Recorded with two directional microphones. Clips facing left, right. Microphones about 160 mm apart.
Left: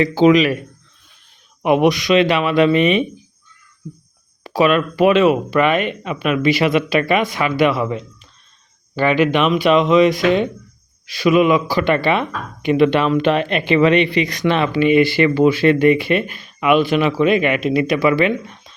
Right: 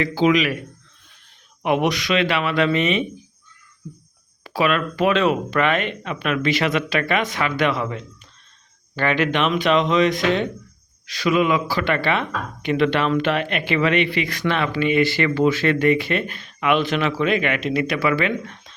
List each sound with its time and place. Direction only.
0.0 s speech: 25° left (ahead or behind)
1.6 s speech: 15° left (ahead or behind)
4.4 s speech: 25° left (ahead or behind)
4.9 s speech: 10° left (ahead or behind)